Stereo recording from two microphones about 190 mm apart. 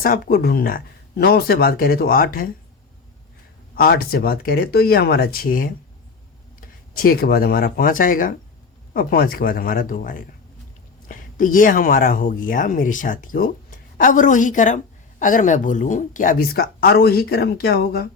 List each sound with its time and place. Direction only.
0.0 s speech: 50° left (ahead or behind)
3.8 s speech: 50° left (ahead or behind)